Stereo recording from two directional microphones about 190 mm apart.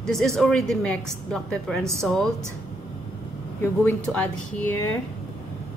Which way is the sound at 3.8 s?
10° left (ahead or behind).